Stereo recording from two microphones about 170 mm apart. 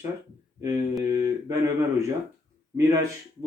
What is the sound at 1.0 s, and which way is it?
Speech, 20° right (ahead or behind).